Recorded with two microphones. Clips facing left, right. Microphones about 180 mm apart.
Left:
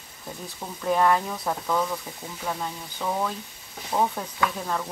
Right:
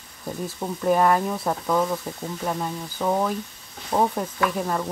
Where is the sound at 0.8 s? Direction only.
5° right (ahead or behind).